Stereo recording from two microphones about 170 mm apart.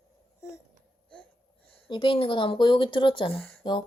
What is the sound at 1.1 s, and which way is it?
Wheeze, 5° left (ahead or behind).